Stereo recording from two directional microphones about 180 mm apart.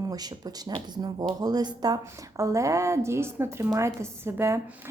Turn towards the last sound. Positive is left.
turn(degrees=-15)  # may be behind; listen again after turning